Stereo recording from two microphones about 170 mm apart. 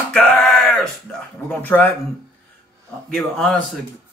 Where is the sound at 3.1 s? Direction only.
Centre (ahead or behind).